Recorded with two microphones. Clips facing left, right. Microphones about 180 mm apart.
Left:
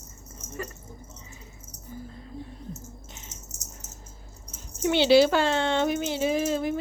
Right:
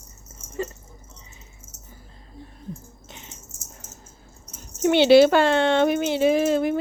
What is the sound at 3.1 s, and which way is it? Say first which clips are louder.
Dog: right 3 dB; 80° right.